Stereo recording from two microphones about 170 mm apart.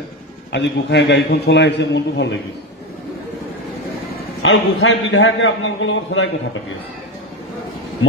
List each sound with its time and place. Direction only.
0.5 s a man's voice: 90° left
4.4 s a man's voice: 90° left